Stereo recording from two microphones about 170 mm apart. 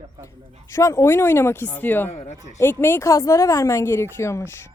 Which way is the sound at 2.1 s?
40° left (ahead or behind).